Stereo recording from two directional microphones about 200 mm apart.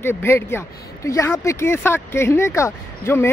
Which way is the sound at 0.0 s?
10° left (ahead or behind).